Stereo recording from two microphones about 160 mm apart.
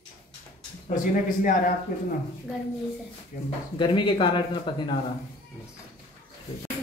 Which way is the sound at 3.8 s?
30° left (ahead or behind).